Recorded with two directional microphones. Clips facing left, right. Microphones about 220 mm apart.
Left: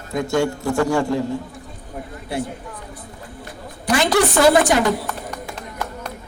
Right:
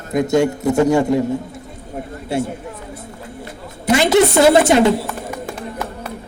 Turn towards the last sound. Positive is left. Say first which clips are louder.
# right 3 dB
turn(degrees=-5)  # may be behind; listen again after turning